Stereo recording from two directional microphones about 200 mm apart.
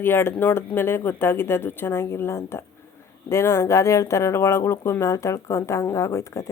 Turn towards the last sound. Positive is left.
turn(degrees=15)  # may be behind; listen again after turning